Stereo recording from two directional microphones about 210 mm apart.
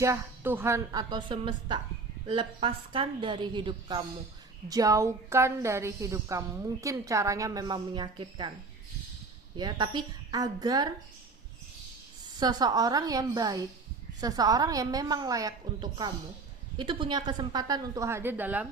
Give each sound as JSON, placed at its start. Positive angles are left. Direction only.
{"t": 0.0, "sound": "a woman's voice", "side_deg": -10}
{"t": 9.6, "sound": "a woman's voice", "side_deg": -20}
{"t": 12.4, "sound": "a woman's voice", "side_deg": -20}